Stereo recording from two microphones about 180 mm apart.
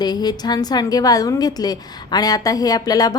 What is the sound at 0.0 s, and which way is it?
A woman's voice, 25° left (ahead or behind).